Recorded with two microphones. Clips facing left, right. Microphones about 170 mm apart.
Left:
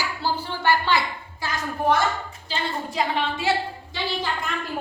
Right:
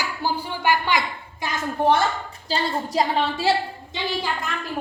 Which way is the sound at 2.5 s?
40° right (ahead or behind).